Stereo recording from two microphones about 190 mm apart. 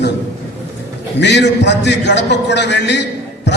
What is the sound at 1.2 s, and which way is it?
A man's voice, 65° left (ahead or behind).